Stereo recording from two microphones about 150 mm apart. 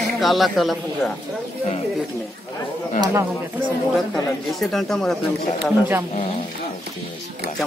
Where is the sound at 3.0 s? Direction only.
20° right (ahead or behind).